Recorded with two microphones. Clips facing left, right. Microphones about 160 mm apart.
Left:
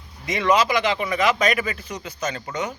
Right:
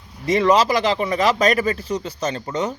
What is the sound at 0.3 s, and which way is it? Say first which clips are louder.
Speech: right 4 dB; 35° right (ahead or behind).